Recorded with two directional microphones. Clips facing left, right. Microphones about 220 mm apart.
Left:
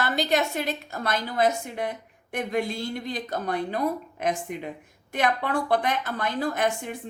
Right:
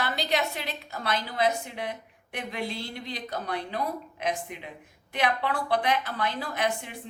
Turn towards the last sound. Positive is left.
turn(degrees=45)  # may be behind; listen again after turning